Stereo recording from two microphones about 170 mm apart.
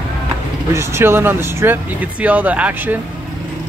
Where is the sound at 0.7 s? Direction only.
15° right (ahead or behind).